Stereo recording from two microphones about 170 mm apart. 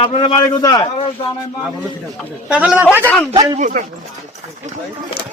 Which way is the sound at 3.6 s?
45° right (ahead or behind).